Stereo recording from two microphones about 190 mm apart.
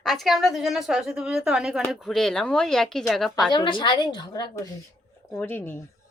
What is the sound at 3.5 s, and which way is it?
A woman's voice, 25° left (ahead or behind).